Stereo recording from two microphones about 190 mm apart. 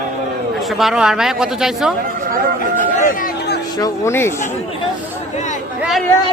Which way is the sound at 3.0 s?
45° left (ahead or behind).